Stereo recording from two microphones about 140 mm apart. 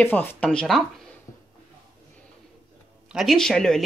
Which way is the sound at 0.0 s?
15° left (ahead or behind).